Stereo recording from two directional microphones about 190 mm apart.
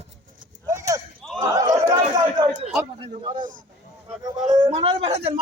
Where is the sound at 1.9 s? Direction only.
25° right (ahead or behind).